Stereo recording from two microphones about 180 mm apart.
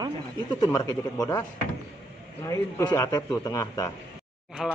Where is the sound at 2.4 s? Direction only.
20° left (ahead or behind).